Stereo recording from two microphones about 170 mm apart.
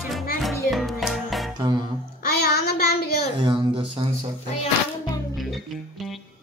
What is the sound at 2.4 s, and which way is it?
Child singing, 70° left (ahead or behind).